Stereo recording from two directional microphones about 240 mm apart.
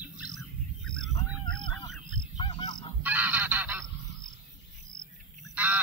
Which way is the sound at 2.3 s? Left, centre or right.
Centre.